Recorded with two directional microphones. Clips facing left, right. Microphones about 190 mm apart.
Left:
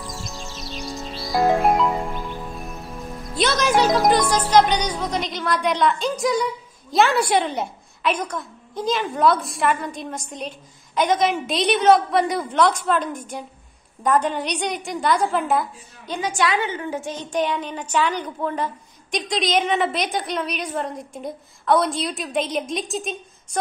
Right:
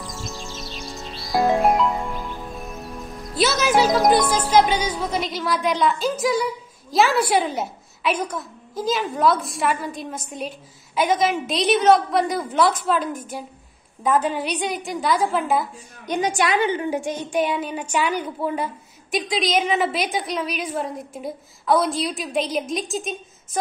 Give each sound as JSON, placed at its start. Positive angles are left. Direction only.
{"t": 0.0, "sound": "music", "side_deg": 0}
{"t": 6.9, "sound": "a woman's voice", "side_deg": 0}
{"t": 16.1, "sound": "a woman's voice", "side_deg": -15}